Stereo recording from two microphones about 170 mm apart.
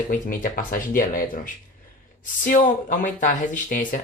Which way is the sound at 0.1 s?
55° left (ahead or behind).